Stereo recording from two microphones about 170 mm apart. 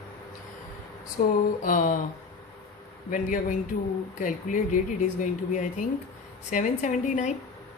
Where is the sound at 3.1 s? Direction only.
55° left (ahead or behind).